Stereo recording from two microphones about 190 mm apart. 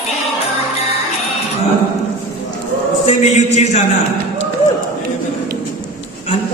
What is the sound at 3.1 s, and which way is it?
Speech, 35° left (ahead or behind).